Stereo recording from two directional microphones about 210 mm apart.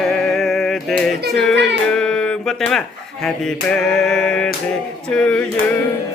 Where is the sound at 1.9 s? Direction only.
5° left (ahead or behind).